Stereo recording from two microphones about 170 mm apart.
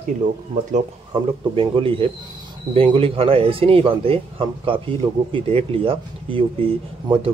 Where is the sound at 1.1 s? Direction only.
30° right (ahead or behind).